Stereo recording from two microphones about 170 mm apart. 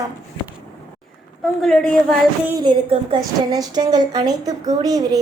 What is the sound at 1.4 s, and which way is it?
Speech, 5° left (ahead or behind).